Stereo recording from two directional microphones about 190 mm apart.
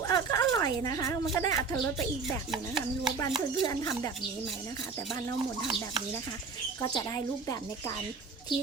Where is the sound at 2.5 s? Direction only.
Centre (ahead or behind).